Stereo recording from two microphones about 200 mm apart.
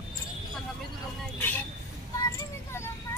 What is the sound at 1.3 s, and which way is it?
Speech, 10° left (ahead or behind).